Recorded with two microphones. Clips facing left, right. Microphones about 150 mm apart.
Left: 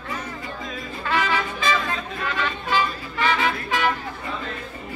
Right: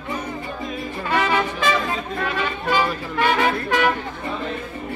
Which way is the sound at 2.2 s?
55° right (ahead or behind).